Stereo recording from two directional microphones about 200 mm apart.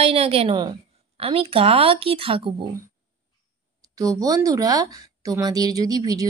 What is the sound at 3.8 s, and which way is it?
Speech, 15° right (ahead or behind).